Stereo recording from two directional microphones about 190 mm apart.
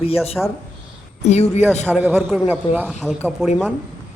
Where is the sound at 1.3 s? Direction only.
35° left (ahead or behind).